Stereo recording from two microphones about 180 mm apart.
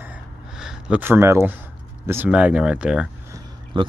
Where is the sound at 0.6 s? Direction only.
5° right (ahead or behind).